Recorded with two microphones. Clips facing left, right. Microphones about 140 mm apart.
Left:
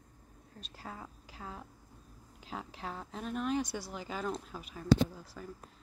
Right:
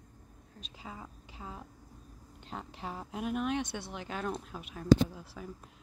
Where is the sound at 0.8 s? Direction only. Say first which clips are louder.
Even; 5° right (ahead or behind).